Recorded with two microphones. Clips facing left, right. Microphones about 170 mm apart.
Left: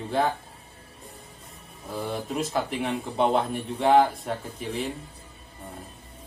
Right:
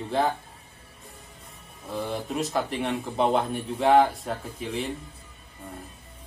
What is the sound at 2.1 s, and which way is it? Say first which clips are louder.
Speech: even; centre (ahead or behind).